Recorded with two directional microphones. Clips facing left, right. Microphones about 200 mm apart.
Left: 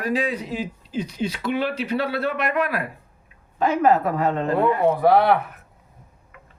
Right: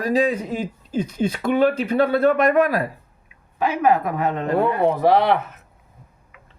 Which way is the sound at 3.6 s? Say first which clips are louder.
Left 1 dB; 10° right (ahead or behind).